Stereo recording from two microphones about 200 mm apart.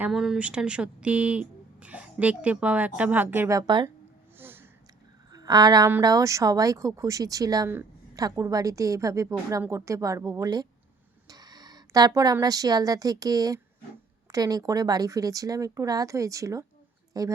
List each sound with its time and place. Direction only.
0.0 s a woman's voice: centre (ahead or behind)
3.7 s speech: 20° right (ahead or behind)
4.4 s a sound: 10° right (ahead or behind)
5.3 s a woman's voice: 20° right (ahead or behind)